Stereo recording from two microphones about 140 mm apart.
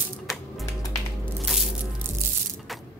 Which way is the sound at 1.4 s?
Centre (ahead or behind).